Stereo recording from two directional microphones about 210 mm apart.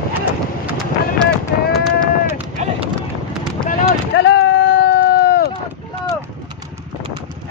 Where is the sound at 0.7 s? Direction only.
Centre (ahead or behind).